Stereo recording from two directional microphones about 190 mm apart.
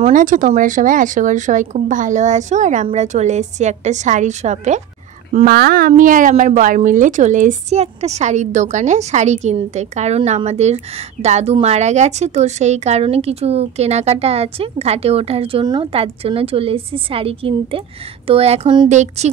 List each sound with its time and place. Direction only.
0.0 s speech: 45° right (ahead or behind)
5.4 s speech: 55° right (ahead or behind); by 19.3 s 35° right (ahead or behind)